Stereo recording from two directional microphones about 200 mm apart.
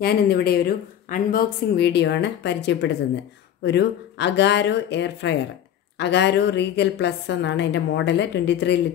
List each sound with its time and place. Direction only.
0.0 s a woman's voice: 50° left (ahead or behind)